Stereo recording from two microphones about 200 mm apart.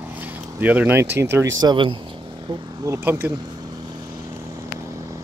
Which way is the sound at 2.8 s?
10° right (ahead or behind).